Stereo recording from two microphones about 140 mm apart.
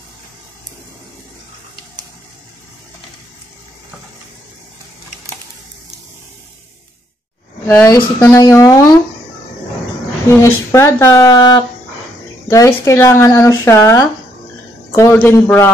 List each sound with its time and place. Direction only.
7.6 s speech: 20° left (ahead or behind)
10.3 s speech: 20° left (ahead or behind)
15.1 s a man's voice: 15° left (ahead or behind)